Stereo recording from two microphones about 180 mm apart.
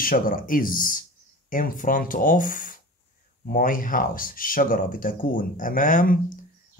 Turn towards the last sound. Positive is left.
turn(degrees=50)  # may be behind; listen again after turning